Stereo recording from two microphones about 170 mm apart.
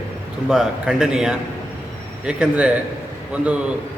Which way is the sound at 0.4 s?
5° right (ahead or behind).